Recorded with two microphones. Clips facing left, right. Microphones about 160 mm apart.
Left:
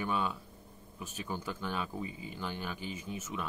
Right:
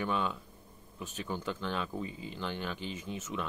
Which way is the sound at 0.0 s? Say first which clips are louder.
Right 1 dB; 5° left (ahead or behind).